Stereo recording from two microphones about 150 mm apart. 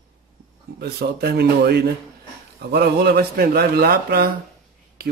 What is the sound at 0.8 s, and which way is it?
A man's voice, 90° right.